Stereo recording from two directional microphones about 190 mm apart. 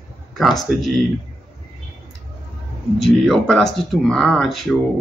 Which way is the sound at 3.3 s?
Centre (ahead or behind).